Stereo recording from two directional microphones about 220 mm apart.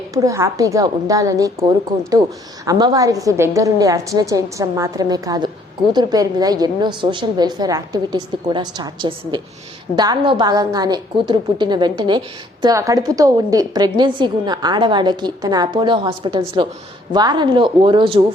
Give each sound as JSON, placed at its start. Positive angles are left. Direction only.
{"t": 0.1, "sound": "a woman's voice", "side_deg": -15}
{"t": 2.6, "sound": "a woman's voice", "side_deg": -15}